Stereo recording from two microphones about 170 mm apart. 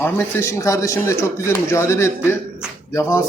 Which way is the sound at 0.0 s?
15° left (ahead or behind).